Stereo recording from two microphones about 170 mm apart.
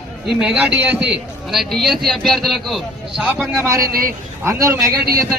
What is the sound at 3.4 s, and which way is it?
A man's voice, 15° right (ahead or behind).